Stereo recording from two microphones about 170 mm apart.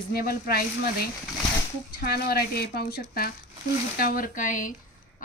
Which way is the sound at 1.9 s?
65° left (ahead or behind).